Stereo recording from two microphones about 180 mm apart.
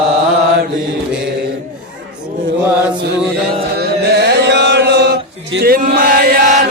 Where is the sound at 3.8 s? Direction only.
60° right (ahead or behind).